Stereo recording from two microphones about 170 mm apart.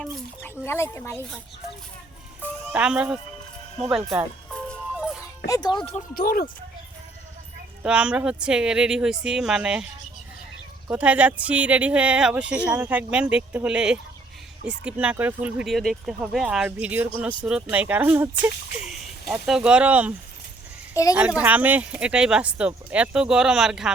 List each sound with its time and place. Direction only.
0.0 s a sound: 15° left (ahead or behind)
2.7 s speech: 5° right (ahead or behind)
4.7 s music: centre (ahead or behind)
5.5 s speech: 25° left (ahead or behind)
6.1 s speech: 55° left (ahead or behind)
7.8 s speech: 5° right (ahead or behind)
10.9 s speech: 10° right (ahead or behind)
20.9 s a child's voice: 20° left (ahead or behind)
21.2 s speech: 10° right (ahead or behind)